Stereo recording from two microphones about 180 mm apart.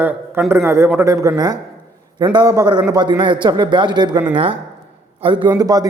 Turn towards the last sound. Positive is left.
turn(degrees=-20)  # may be behind; listen again after turning